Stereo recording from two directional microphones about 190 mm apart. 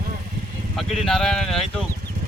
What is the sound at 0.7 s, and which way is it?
Speech, centre (ahead or behind).